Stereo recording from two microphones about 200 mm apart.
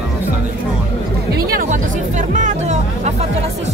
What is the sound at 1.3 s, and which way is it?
Speech, 45° right (ahead or behind).